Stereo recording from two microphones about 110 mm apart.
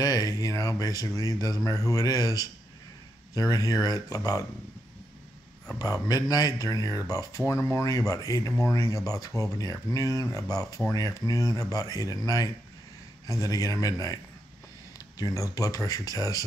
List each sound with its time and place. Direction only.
0.0 s speech: 35° left (ahead or behind)
6.0 s speech: 35° left (ahead or behind)